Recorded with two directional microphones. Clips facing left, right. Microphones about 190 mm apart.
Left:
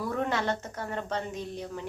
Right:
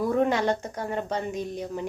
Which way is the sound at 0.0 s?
15° right (ahead or behind).